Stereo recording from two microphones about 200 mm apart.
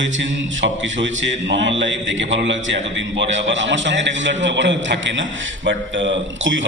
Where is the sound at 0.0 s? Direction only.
65° right (ahead or behind).